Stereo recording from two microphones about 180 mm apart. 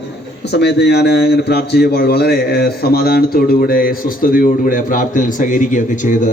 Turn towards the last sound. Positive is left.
turn(degrees=45)  # may be behind; listen again after turning